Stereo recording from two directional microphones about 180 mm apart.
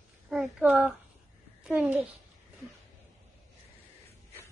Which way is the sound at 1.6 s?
5° right (ahead or behind).